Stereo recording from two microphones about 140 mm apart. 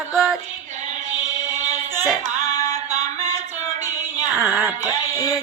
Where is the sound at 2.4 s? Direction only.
25° left (ahead or behind).